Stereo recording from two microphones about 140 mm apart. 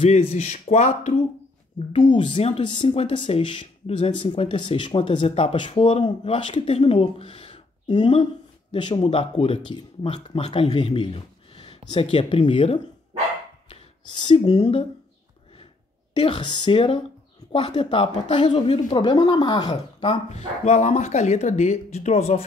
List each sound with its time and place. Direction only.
0.0 s speech: 50° left (ahead or behind)
1.9 s speech: 35° left (ahead or behind)
16.2 s speech: 35° left (ahead or behind)
19.7 s speech: 45° left (ahead or behind)